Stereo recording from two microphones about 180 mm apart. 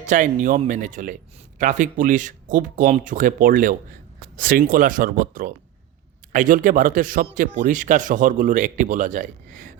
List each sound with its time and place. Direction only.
0.0 s speech: 40° right (ahead or behind)